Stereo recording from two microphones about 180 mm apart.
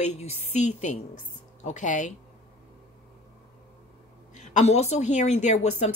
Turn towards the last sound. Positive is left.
turn(degrees=40)  # may be behind; listen again after turning